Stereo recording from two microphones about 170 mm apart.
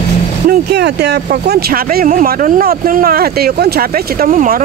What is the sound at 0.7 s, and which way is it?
Speech, 75° right (ahead or behind).